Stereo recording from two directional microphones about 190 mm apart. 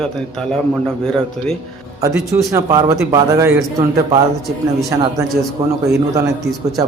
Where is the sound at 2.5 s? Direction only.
15° right (ahead or behind).